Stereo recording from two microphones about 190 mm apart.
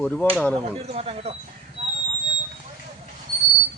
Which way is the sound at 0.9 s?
30° right (ahead or behind).